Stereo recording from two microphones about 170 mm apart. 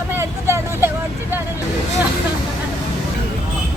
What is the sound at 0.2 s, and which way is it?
Vehicle, 15° right (ahead or behind).